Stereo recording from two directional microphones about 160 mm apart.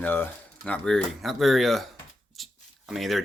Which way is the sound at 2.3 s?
Centre (ahead or behind).